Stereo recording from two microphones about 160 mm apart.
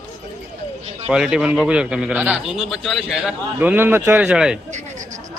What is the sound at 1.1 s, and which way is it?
A man's voice, 5° right (ahead or behind).